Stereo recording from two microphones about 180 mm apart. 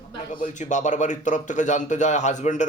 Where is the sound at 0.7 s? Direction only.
45° left (ahead or behind).